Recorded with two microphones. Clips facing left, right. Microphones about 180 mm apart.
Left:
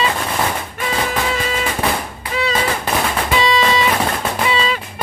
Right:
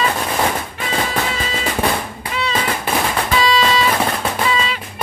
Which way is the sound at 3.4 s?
20° left (ahead or behind).